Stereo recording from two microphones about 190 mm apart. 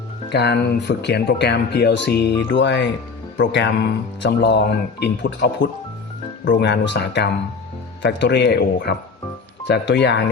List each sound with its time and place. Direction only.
0.3 s speech: 60° left (ahead or behind)